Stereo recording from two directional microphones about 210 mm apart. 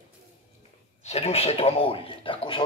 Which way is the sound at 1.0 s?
30° left (ahead or behind).